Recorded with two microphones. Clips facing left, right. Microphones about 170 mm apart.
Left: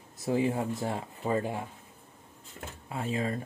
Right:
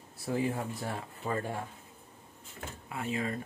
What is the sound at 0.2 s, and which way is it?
Speech, 20° left (ahead or behind).